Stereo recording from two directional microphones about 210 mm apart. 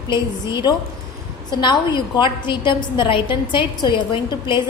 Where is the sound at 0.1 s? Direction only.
20° left (ahead or behind).